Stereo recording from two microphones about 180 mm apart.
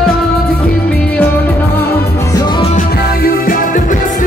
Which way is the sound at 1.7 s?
10° left (ahead or behind).